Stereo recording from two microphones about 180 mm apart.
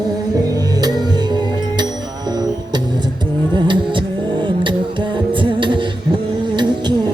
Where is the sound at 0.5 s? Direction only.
20° right (ahead or behind).